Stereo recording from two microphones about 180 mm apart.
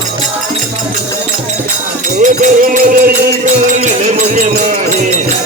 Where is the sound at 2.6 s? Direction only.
55° right (ahead or behind).